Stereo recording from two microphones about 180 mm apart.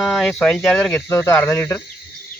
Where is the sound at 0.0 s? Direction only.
Centre (ahead or behind).